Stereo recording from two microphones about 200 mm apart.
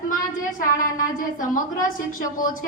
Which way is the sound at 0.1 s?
40° left (ahead or behind).